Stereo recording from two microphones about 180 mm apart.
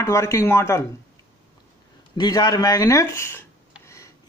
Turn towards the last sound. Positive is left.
turn(degrees=15)  # may be behind; listen again after turning